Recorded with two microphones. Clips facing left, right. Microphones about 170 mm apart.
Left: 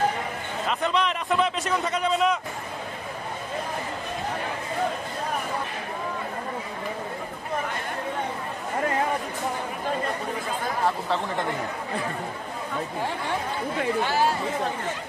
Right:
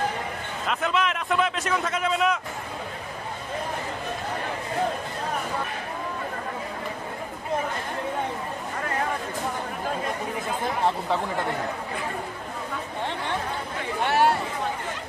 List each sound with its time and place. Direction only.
0.7 s a man's voice: centre (ahead or behind)
14.0 s speech: 65° right (ahead or behind)